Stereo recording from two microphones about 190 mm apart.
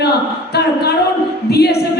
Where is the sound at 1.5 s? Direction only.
60° left (ahead or behind).